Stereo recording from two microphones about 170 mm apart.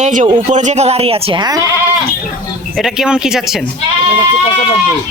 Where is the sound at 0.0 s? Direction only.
50° right (ahead or behind); by 1.6 s 25° right (ahead or behind).